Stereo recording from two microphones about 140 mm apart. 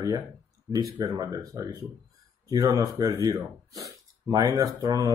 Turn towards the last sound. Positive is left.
turn(degrees=-25)  # may be behind; listen again after turning